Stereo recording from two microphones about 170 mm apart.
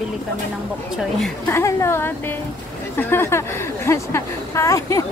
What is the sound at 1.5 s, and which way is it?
A woman's voice, 15° left (ahead or behind).